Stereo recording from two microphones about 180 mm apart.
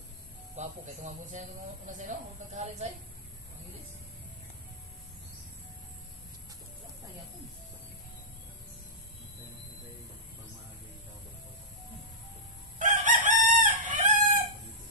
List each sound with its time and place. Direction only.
0.6 s a woman's voice: 45° right (ahead or behind)
12.7 s chicken: 45° right (ahead or behind)